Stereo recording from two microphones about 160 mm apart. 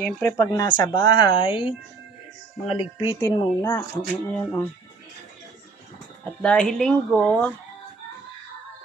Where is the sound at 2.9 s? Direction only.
30° left (ahead or behind).